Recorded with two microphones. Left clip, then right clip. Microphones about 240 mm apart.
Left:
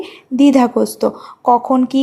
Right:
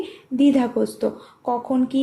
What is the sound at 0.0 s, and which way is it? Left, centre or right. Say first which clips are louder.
Speech: left 6 dB; left.